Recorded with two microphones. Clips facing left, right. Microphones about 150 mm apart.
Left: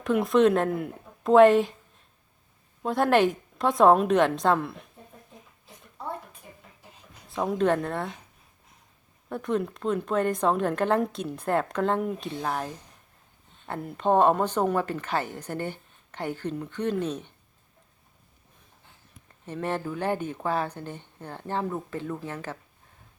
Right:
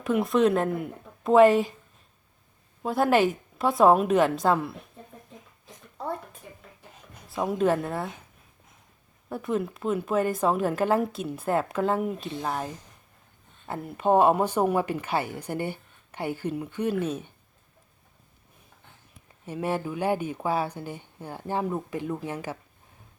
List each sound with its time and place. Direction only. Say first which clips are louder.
0.0 s a woman's voice: left 1 dB; centre (ahead or behind)
2.8 s a woman's voice: even; centre (ahead or behind)
7.3 s a woman's voice: even; 5° right (ahead or behind)
9.3 s a woman's voice: left 1 dB; 5° right (ahead or behind)
19.5 s a woman's voice: right 1 dB; 10° right (ahead or behind)